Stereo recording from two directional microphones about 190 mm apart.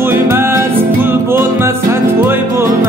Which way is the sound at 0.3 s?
15° right (ahead or behind).